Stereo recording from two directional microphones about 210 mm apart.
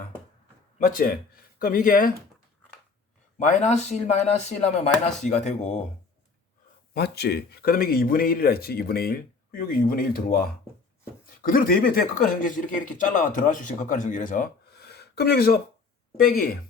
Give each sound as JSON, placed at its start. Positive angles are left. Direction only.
{"t": 0.9, "sound": "speech", "side_deg": 40}
{"t": 3.3, "sound": "speech", "side_deg": 35}
{"t": 6.9, "sound": "speech", "side_deg": 50}
{"t": 11.4, "sound": "speech", "side_deg": 45}